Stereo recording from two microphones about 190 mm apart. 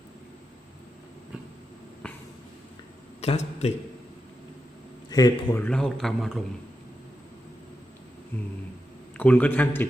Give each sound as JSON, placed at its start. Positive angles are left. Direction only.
{"t": 3.2, "sound": "a man's voice", "side_deg": 35}
{"t": 5.0, "sound": "a man's voice", "side_deg": 20}
{"t": 5.6, "sound": "a man's voice", "side_deg": 5}
{"t": 9.1, "sound": "a man's voice", "side_deg": 5}